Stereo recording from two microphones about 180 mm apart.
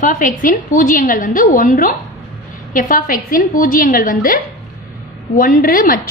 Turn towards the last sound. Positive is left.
turn(degrees=50)  # may be behind; listen again after turning